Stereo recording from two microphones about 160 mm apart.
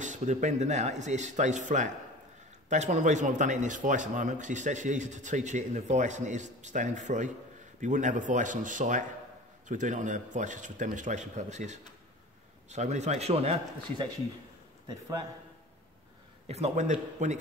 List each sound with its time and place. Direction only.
0.0 s a man's voice: 50° right (ahead or behind)
14.9 s a man's voice: 25° right (ahead or behind)
16.4 s a man's voice: 40° right (ahead or behind)